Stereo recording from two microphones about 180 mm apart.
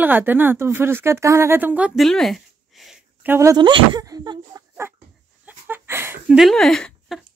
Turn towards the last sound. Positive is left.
turn(degrees=0)  # may be behind; listen again after turning